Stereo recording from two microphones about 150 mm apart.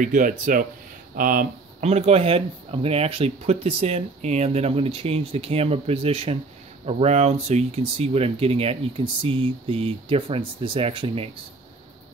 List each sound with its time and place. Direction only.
0.0 s speech: 65° right (ahead or behind)
1.8 s speech: 45° right (ahead or behind)